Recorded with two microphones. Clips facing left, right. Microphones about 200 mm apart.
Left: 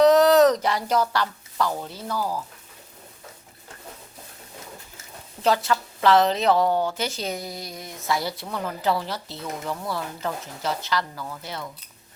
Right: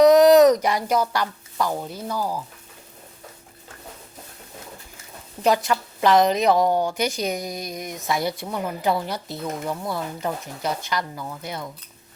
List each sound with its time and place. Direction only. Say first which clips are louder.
0.0 s speech: right 3 dB; 15° right (ahead or behind)
5.4 s a woman's voice: right 2 dB; 15° right (ahead or behind)